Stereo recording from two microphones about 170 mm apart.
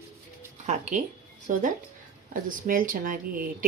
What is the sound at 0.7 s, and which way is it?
Speech, 45° right (ahead or behind).